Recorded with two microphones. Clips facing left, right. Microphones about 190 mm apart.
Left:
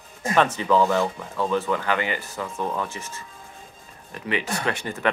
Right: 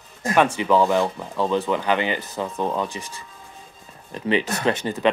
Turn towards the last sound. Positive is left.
turn(degrees=-20)  # may be behind; listen again after turning